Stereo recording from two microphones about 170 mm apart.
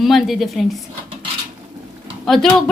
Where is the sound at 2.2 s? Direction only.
Centre (ahead or behind).